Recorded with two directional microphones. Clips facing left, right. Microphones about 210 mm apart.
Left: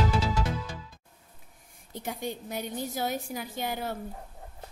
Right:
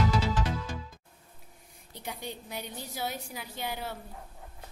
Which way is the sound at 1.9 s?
50° left (ahead or behind).